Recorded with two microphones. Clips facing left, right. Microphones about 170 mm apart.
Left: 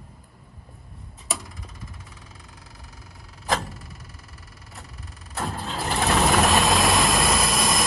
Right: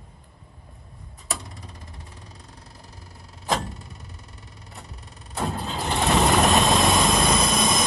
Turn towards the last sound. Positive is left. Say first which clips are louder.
# right 1 dB
turn(degrees=0)  # may be behind; listen again after turning